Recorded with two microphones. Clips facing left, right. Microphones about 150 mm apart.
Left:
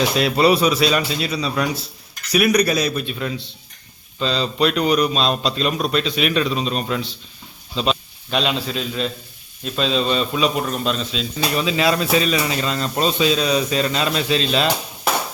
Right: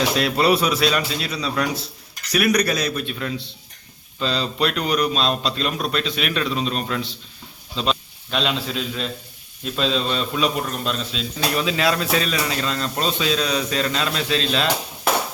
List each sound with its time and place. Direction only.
0.2 s a man's voice: centre (ahead or behind)